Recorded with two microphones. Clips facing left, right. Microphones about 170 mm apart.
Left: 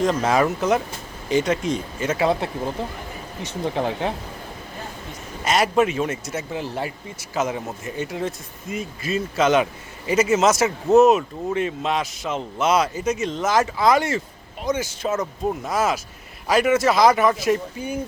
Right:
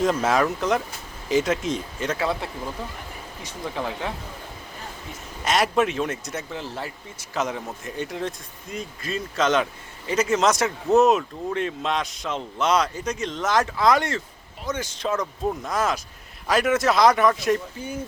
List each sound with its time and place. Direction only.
0.0 s speech: 5° right (ahead or behind)
2.1 s speech: 20° left (ahead or behind)
5.5 s speech: centre (ahead or behind)
17.8 s speech: 15° left (ahead or behind)